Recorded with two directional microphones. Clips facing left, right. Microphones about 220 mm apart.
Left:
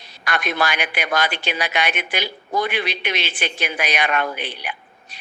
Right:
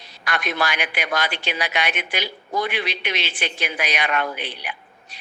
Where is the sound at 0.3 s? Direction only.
50° left (ahead or behind).